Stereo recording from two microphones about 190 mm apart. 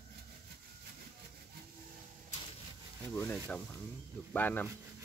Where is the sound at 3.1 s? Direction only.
10° left (ahead or behind).